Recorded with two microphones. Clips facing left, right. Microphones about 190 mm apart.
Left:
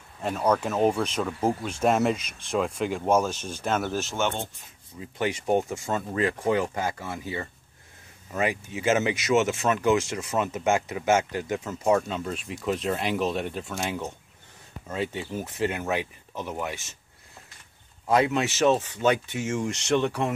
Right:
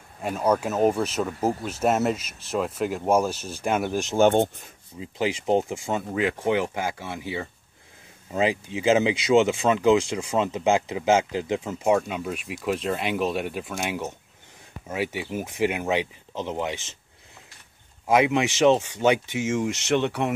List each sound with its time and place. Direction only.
0.2 s speech: 10° right (ahead or behind)
6.7 s speech: 5° right (ahead or behind)
8.3 s speech: 25° right (ahead or behind)
10.3 s speech: 30° right (ahead or behind)
18.0 s speech: 15° right (ahead or behind)